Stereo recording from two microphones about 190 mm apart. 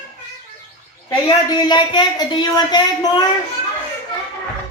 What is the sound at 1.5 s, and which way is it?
Speech, 20° left (ahead or behind).